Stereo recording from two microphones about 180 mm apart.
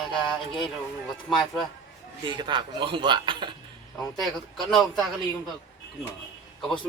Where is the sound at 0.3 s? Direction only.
Centre (ahead or behind).